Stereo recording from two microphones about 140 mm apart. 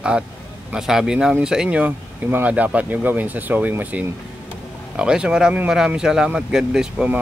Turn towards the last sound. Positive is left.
turn(degrees=-5)  # may be behind; listen again after turning